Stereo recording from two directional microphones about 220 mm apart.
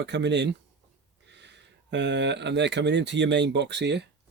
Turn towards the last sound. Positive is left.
turn(degrees=-50)  # may be behind; listen again after turning